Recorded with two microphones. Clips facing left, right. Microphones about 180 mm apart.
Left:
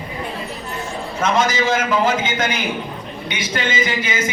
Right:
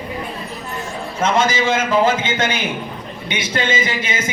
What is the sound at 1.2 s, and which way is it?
A man's voice, 25° right (ahead or behind).